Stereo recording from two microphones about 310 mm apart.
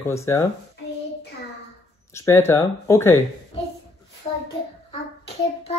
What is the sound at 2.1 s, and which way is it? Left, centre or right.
Speech, centre.